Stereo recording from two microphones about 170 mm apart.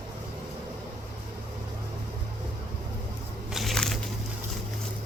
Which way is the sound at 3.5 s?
Centre (ahead or behind).